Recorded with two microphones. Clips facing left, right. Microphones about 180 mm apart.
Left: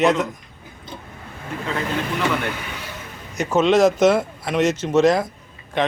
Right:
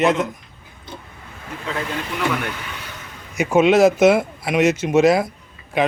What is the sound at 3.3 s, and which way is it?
Speech, 10° right (ahead or behind).